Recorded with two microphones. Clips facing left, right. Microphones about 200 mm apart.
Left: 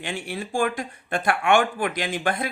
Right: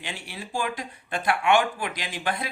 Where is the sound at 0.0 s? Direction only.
50° left (ahead or behind).